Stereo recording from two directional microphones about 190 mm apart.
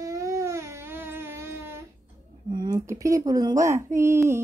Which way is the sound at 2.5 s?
20° right (ahead or behind).